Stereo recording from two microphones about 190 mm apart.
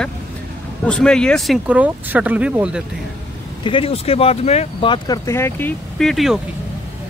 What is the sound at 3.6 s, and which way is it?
Speech, 30° left (ahead or behind).